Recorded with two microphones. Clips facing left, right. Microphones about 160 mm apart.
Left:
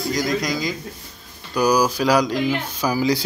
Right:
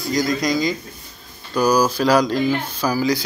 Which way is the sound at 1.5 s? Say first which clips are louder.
Right 1 dB; 15° left (ahead or behind).